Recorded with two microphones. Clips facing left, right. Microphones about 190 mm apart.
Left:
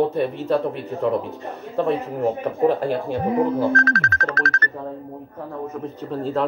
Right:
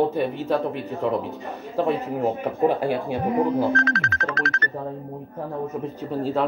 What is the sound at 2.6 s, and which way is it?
Speech, 5° right (ahead or behind).